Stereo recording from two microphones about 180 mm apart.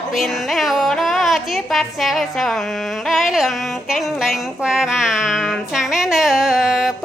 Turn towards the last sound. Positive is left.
turn(degrees=0)  # may be behind; listen again after turning